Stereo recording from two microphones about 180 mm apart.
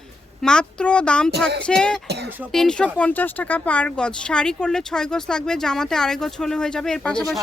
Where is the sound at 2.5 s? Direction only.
5° left (ahead or behind).